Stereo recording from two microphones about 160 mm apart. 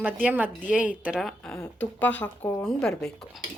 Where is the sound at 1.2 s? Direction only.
5° left (ahead or behind).